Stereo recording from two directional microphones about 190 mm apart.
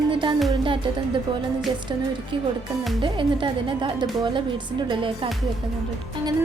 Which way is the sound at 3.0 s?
25° right (ahead or behind).